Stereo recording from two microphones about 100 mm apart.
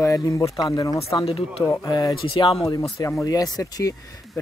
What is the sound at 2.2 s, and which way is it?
Speech, 55° left (ahead or behind).